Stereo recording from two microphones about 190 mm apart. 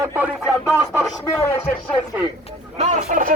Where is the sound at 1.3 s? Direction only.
15° left (ahead or behind).